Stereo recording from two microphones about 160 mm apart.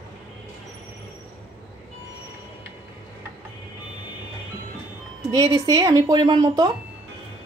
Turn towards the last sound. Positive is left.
turn(degrees=-25)  # may be behind; listen again after turning